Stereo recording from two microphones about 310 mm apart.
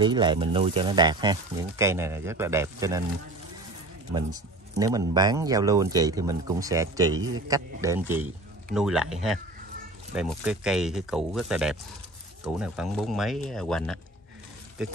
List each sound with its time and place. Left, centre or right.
0.0 s speech: centre
4.1 s speech: centre
7.2 s a man's voice: right
7.4 s speech: centre
10.1 s speech: centre